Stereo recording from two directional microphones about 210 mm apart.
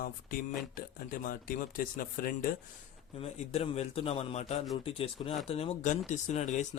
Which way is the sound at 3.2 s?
30° left (ahead or behind).